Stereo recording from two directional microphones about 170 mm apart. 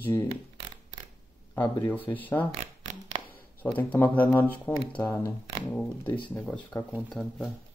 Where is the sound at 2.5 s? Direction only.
40° right (ahead or behind).